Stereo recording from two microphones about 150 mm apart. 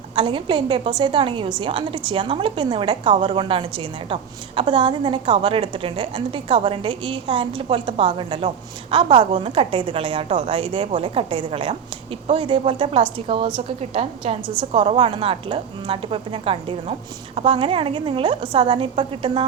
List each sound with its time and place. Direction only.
0.2 s a woman's voice: 35° right (ahead or behind)